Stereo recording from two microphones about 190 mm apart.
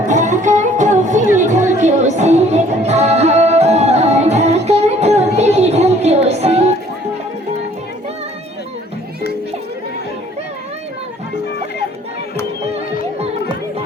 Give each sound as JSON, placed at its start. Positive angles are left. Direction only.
{"t": 0.0, "sound": "music", "side_deg": -40}